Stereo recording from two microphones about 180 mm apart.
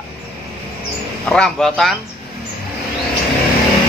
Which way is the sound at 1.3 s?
5° left (ahead or behind).